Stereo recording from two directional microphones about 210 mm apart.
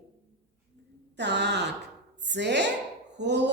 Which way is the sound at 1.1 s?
55° right (ahead or behind).